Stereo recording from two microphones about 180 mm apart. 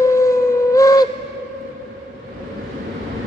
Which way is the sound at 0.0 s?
15° left (ahead or behind).